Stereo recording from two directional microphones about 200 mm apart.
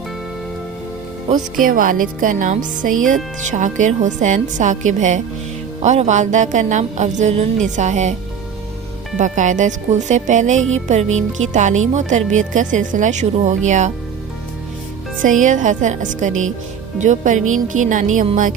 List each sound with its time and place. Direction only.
1.3 s speech: 45° right (ahead or behind)
9.1 s speech: 40° right (ahead or behind)
15.2 s speech: 40° right (ahead or behind)